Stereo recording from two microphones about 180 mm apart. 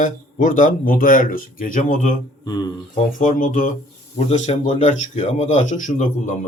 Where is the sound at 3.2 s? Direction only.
45° left (ahead or behind).